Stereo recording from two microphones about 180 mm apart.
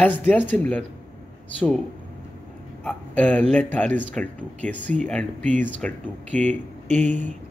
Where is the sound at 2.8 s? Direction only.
5° left (ahead or behind).